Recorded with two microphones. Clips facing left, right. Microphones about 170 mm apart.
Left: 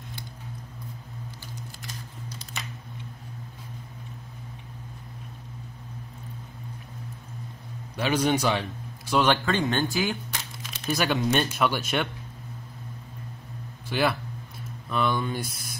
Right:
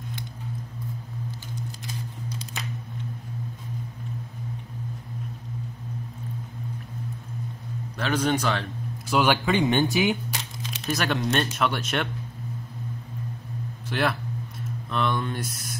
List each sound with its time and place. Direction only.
8.0 s speech: 10° left (ahead or behind)
9.1 s speech: 5° right (ahead or behind)
10.9 s speech: centre (ahead or behind)
13.8 s speech: centre (ahead or behind)